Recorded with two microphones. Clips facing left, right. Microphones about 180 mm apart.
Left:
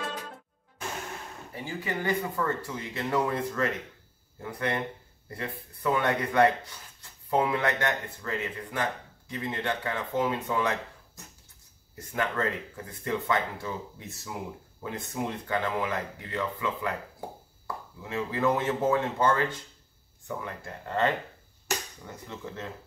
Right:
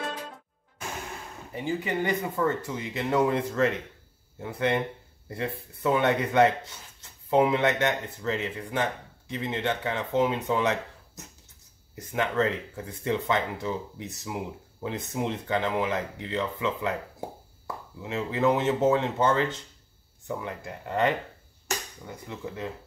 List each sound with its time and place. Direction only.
1.5 s speech: 20° right (ahead or behind)
11.9 s speech: 20° right (ahead or behind)
18.0 s speech: 20° right (ahead or behind)